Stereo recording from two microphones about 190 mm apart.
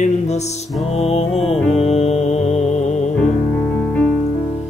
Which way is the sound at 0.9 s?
30° left (ahead or behind).